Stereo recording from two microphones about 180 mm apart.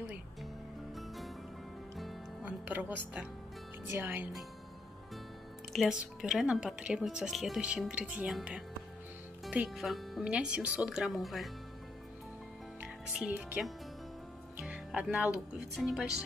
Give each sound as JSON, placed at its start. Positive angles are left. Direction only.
{"t": 0.9, "sound": "music", "side_deg": 0}
{"t": 3.9, "sound": "speech", "side_deg": -10}
{"t": 5.7, "sound": "a woman's voice", "side_deg": 0}
{"t": 12.8, "sound": "a woman's voice", "side_deg": -10}